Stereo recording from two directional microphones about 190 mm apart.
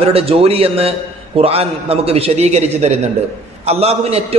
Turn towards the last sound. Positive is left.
turn(degrees=-35)  # may be behind; listen again after turning